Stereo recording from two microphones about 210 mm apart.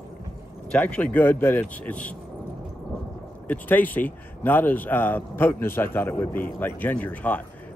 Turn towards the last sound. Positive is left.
turn(degrees=5)  # may be behind; listen again after turning